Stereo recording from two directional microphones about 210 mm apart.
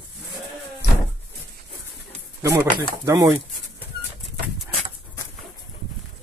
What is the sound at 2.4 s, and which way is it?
Speech, 15° right (ahead or behind).